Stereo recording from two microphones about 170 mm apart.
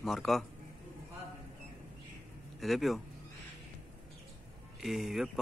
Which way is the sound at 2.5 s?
Centre (ahead or behind).